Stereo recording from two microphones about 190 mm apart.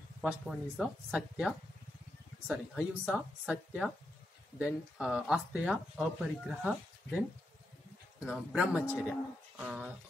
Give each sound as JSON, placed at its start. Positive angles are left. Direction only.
{"t": 0.2, "sound": "speech", "side_deg": -5}